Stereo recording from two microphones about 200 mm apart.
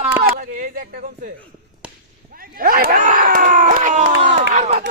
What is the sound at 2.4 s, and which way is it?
Speech, 45° right (ahead or behind).